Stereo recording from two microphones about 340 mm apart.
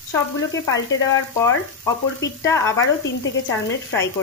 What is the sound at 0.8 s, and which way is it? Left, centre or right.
Speech, left.